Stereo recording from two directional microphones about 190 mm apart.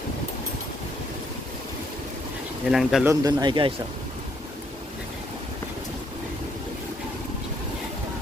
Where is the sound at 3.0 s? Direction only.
20° right (ahead or behind).